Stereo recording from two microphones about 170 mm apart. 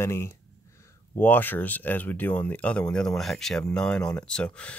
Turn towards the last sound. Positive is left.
turn(degrees=5)  # may be behind; listen again after turning